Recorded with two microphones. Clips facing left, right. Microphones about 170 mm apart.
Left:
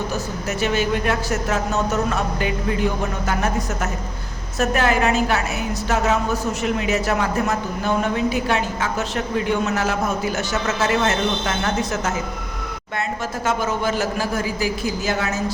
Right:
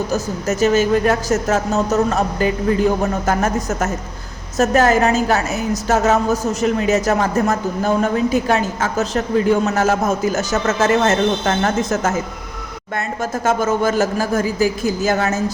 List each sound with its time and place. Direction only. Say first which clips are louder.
0.1 s a man's voice: right 5 dB; 40° right (ahead or behind)
13.4 s a man's voice: right 5 dB; 45° right (ahead or behind)